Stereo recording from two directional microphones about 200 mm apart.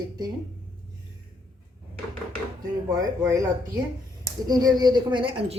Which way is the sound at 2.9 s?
15° right (ahead or behind).